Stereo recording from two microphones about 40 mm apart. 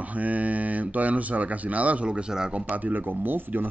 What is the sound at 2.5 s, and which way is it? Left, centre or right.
Speech, right.